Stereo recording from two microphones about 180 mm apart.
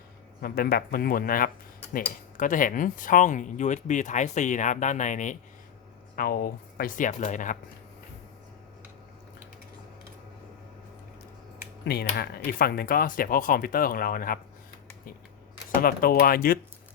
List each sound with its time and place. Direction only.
0.4 s speech: 55° left (ahead or behind)
6.1 s speech: 55° left (ahead or behind)
11.9 s speech: 60° left (ahead or behind)
15.7 s speech: 55° left (ahead or behind)